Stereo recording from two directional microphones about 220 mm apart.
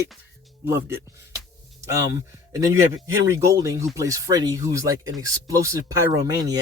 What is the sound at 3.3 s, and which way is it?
Speech, 15° right (ahead or behind).